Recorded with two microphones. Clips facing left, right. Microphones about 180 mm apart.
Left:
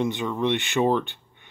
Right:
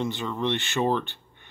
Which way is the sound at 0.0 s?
15° left (ahead or behind).